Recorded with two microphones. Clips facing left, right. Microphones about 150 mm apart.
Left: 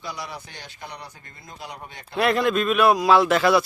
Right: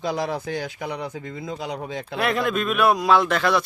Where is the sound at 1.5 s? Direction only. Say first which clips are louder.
Right 7 dB; 90° right.